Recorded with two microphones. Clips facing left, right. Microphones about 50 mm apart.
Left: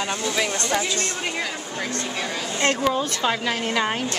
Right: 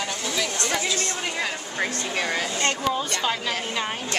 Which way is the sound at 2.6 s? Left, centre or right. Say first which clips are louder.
Left 7 dB; centre.